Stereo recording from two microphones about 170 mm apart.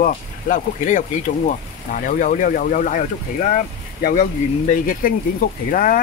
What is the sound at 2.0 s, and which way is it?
Speech, 50° left (ahead or behind).